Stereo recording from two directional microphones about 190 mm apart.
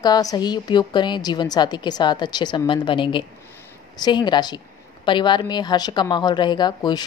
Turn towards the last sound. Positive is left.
turn(degrees=20)  # may be behind; listen again after turning